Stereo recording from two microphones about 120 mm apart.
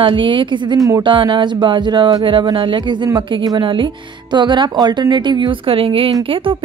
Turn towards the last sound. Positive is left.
turn(degrees=-45)  # may be behind; listen again after turning